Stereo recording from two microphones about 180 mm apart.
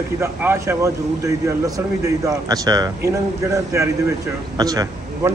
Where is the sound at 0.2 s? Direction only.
15° right (ahead or behind).